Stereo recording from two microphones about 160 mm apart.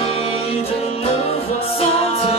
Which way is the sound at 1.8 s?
35° left (ahead or behind).